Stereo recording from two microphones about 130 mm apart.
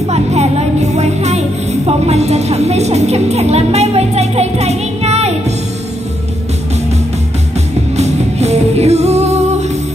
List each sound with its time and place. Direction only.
0.1 s speech: 55° right (ahead or behind)
7.9 s music: 55° right (ahead or behind)